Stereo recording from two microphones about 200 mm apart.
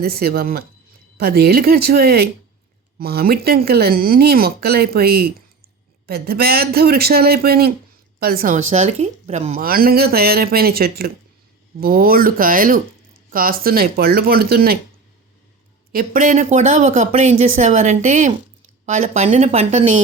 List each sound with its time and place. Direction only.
0.0 s speech: 50° right (ahead or behind)
8.7 s speech: 35° right (ahead or behind)
15.9 s speech: 45° right (ahead or behind)